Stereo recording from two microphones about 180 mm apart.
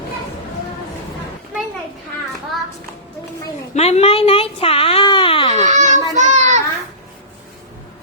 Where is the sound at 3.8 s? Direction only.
35° left (ahead or behind).